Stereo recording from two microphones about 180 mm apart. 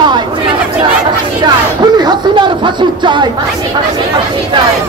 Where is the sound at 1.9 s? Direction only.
25° right (ahead or behind).